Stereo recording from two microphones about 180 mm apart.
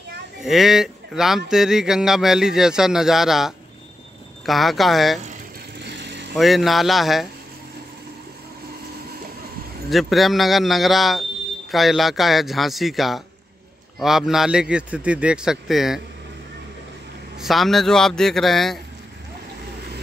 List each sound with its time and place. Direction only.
0.4 s speech: centre (ahead or behind)
5.8 s vehicle: 75° right (ahead or behind)
6.3 s speech: centre (ahead or behind)
9.8 s speech: centre (ahead or behind)
17.4 s speech: centre (ahead or behind)